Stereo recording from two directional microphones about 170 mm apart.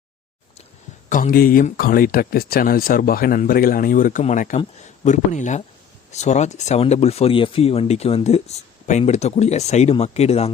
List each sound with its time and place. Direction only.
1.1 s speech: 55° left (ahead or behind); by 10.5 s 40° left (ahead or behind)